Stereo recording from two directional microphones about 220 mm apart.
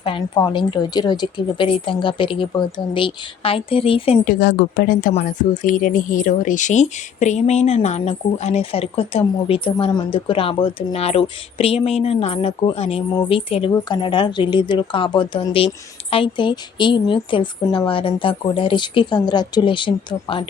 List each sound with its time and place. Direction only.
0.0 s a woman's voice: 20° left (ahead or behind)
4.3 s a woman's voice: 45° left (ahead or behind); by 20.5 s 25° left (ahead or behind)